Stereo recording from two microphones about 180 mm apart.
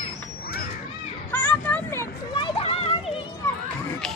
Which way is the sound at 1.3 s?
10° left (ahead or behind).